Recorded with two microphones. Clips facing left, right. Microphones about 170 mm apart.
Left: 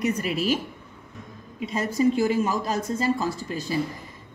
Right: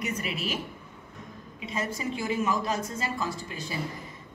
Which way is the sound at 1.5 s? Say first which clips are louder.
Left 8 dB; 40° left (ahead or behind).